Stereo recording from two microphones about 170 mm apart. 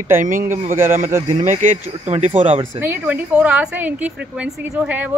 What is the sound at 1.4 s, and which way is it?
Speech, 45° right (ahead or behind).